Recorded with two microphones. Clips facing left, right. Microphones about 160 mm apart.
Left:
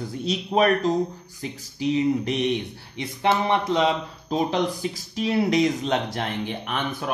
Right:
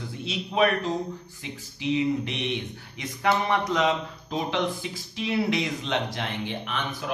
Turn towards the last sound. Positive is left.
turn(degrees=50)  # may be behind; listen again after turning